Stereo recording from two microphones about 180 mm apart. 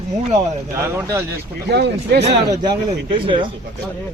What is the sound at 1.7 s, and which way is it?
Speech, 65° right (ahead or behind).